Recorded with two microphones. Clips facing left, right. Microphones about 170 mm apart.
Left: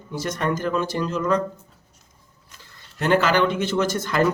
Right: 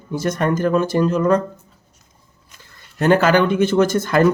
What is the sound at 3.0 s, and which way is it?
Speech, 50° right (ahead or behind).